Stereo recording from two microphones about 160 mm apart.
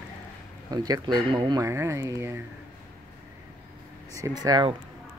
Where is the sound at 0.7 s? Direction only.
25° right (ahead or behind).